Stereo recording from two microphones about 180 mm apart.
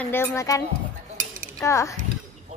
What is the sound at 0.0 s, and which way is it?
A woman's voice, 10° left (ahead or behind).